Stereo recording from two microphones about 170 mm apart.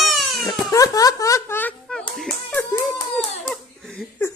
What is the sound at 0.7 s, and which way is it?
Speech, 20° left (ahead or behind).